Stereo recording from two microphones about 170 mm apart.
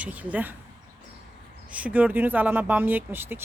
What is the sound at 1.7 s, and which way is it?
Speech, 10° right (ahead or behind).